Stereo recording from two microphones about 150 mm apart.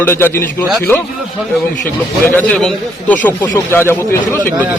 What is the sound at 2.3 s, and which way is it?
A man's voice, 10° left (ahead or behind).